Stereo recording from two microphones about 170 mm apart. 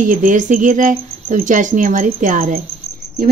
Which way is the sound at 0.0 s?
50° right (ahead or behind).